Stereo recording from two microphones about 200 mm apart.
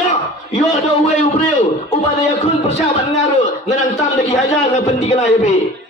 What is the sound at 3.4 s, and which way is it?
A man's voice, 35° left (ahead or behind).